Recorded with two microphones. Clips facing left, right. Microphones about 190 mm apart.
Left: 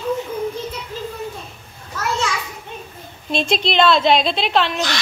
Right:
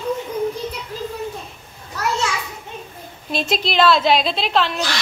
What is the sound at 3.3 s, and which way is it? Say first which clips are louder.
Speech: left 2 dB; 5° right (ahead or behind).